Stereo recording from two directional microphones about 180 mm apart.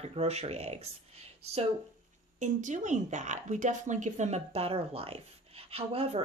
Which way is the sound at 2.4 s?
45° right (ahead or behind).